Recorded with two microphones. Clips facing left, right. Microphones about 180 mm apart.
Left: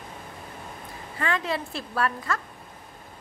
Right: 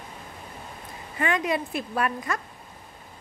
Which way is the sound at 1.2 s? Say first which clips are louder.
Right 3 dB; 20° right (ahead or behind).